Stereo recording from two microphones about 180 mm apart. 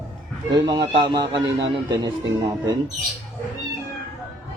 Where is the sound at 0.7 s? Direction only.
20° right (ahead or behind).